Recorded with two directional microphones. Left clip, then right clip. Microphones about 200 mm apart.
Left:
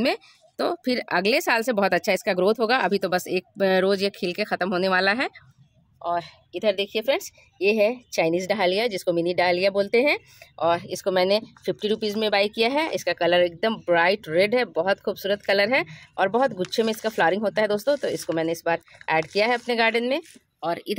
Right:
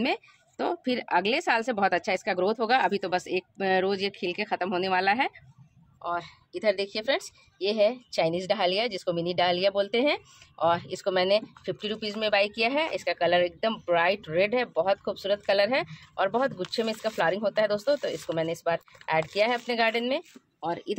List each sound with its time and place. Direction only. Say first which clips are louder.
0.0 s a woman's voice: left 4 dB; 55° left (ahead or behind)
6.0 s a woman's voice: left 5 dB; 35° left (ahead or behind)
6.8 s a woman's voice: left 4 dB; 50° left (ahead or behind)
20.6 s speech: left 4 dB; 25° left (ahead or behind)